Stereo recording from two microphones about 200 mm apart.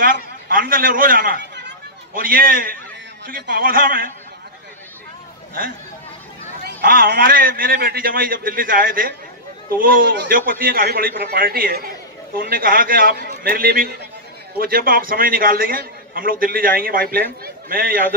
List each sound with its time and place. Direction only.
0.0 s a man's voice: 45° right (ahead or behind)
6.6 s a man's voice: 45° right (ahead or behind)